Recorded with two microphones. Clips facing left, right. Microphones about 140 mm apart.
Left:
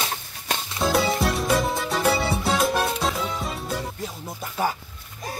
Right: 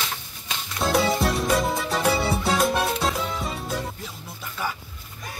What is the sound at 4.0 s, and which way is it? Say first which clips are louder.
Music: left 5 dB; 40° left (ahead or behind).